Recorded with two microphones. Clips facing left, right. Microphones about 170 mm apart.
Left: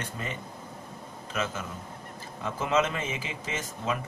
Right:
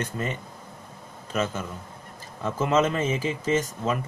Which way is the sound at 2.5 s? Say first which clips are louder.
Right 4 dB; 40° right (ahead or behind).